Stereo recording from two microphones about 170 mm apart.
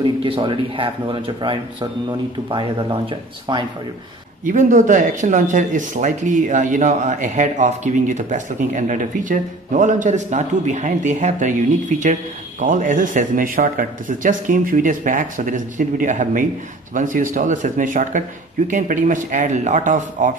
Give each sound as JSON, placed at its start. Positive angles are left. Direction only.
{"t": 0.0, "sound": "speech", "side_deg": -30}
{"t": 4.5, "sound": "speech", "side_deg": -50}